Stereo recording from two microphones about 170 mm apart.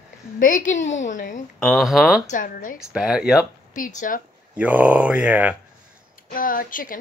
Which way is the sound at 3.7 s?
50° left (ahead or behind).